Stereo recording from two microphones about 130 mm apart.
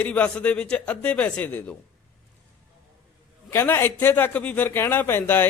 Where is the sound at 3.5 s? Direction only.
20° left (ahead or behind).